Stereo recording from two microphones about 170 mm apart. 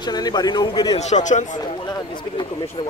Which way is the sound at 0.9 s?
40° left (ahead or behind).